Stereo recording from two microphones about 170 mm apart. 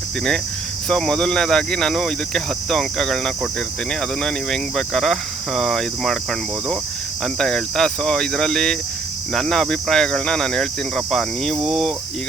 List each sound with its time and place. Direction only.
0.9 s speech: 5° left (ahead or behind)
7.3 s speech: 5° left (ahead or behind)